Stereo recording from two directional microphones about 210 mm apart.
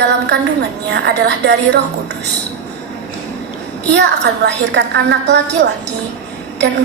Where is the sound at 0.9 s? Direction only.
55° right (ahead or behind).